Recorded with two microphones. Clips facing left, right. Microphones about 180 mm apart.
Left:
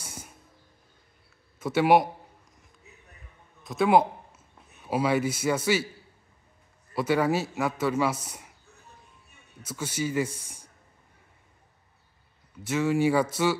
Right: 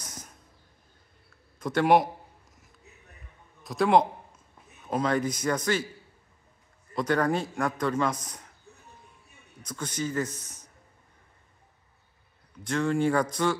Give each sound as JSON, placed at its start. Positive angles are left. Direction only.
{"t": 0.0, "sound": "a sound", "side_deg": 10}
{"t": 1.6, "sound": "a man's voice", "side_deg": 5}
{"t": 3.6, "sound": "a man's voice", "side_deg": 0}
{"t": 6.9, "sound": "a man's voice", "side_deg": 5}
{"t": 9.6, "sound": "a man's voice", "side_deg": 5}
{"t": 12.6, "sound": "a man's voice", "side_deg": 5}